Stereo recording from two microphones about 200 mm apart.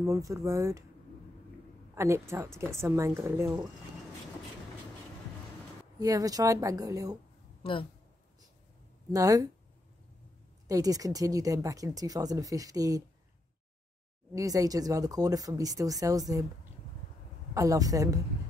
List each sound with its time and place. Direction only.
0.0 s speech: 15° right (ahead or behind)
2.0 s speech: 15° right (ahead or behind)
5.9 s speech: 20° right (ahead or behind)
9.1 s speech: 15° right (ahead or behind)
10.7 s speech: 15° right (ahead or behind)
14.3 s speech: 15° right (ahead or behind)
17.6 s speech: 15° right (ahead or behind)